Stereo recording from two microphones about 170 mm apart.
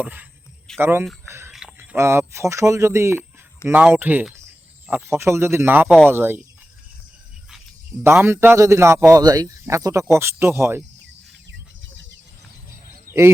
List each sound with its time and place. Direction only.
0.0 s a man's voice: 10° right (ahead or behind)
1.3 s a sound: 15° right (ahead or behind)
1.5 s a man's voice: 5° right (ahead or behind)
8.0 s a man's voice: 15° right (ahead or behind)